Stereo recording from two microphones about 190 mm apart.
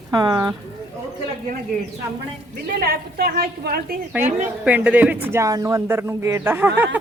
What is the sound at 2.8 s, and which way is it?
A woman's voice, 55° right (ahead or behind).